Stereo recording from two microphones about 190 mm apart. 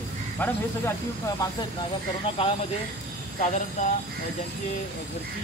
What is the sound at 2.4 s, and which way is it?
Speech, 30° left (ahead or behind).